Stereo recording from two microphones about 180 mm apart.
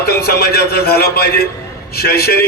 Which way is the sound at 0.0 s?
60° left (ahead or behind).